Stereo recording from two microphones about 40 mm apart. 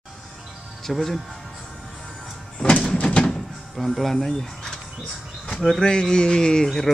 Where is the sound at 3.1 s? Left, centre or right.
Centre.